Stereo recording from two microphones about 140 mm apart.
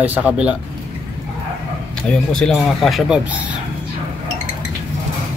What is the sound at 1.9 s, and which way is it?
Speech, 5° left (ahead or behind).